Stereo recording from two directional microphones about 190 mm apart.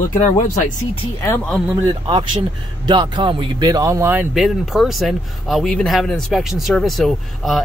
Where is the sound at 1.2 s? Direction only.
15° left (ahead or behind).